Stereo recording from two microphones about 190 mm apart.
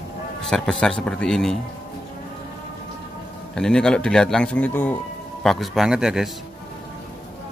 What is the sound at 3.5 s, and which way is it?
Speech, 5° left (ahead or behind).